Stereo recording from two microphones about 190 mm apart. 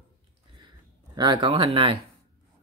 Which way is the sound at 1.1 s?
25° right (ahead or behind).